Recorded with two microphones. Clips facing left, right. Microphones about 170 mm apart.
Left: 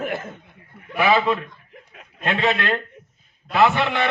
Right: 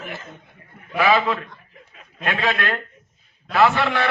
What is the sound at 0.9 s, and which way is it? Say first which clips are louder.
A man's voice: even; 20° left (ahead or behind).